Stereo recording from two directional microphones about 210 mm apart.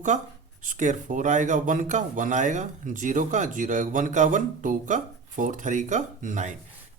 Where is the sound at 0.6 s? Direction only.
35° right (ahead or behind).